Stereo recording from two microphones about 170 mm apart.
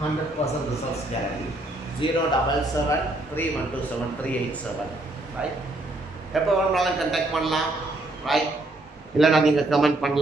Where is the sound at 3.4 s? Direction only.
10° left (ahead or behind).